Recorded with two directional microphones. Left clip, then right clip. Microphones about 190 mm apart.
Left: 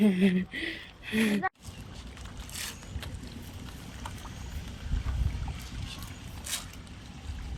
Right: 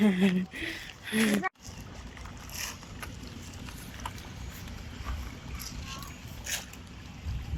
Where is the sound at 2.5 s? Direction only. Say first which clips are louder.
Right 1 dB; centre (ahead or behind).